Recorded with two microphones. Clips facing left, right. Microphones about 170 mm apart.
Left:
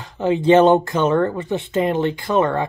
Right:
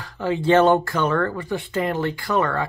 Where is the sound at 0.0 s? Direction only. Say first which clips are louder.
Left 4 dB; 20° left (ahead or behind).